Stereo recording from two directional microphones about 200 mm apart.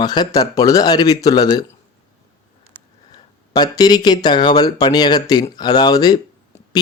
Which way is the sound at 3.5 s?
20° left (ahead or behind).